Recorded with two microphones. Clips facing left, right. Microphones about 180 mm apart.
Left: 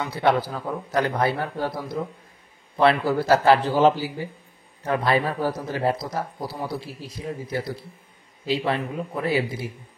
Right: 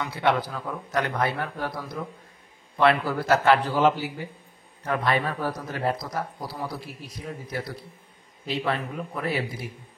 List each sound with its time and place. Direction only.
0.0 s a man's voice: 35° left (ahead or behind)